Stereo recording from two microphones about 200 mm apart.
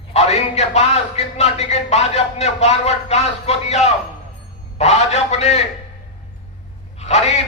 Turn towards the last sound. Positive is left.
turn(degrees=35)  # may be behind; listen again after turning